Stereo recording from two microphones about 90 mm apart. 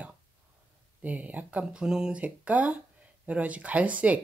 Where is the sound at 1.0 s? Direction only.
20° right (ahead or behind).